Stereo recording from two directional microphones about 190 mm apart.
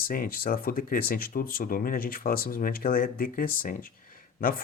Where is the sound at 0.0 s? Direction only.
50° left (ahead or behind).